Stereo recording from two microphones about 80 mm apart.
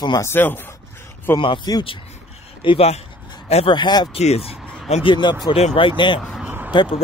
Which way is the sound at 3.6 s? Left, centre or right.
Left.